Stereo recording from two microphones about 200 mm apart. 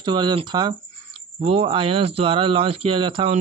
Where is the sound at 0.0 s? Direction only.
20° right (ahead or behind).